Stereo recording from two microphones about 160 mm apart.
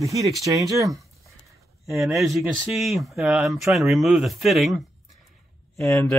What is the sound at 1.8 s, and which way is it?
Speech, centre (ahead or behind).